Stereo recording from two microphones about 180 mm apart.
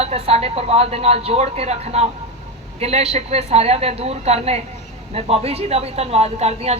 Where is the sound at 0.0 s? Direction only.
35° right (ahead or behind).